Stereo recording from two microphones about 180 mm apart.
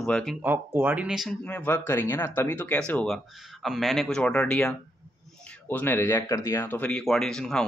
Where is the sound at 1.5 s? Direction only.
10° left (ahead or behind).